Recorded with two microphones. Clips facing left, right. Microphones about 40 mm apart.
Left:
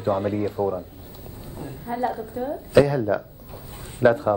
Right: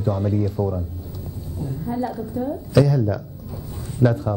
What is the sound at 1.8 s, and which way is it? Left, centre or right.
Speech, left.